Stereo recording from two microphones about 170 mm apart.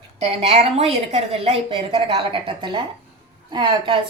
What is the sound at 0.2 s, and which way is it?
A woman's voice, 40° right (ahead or behind).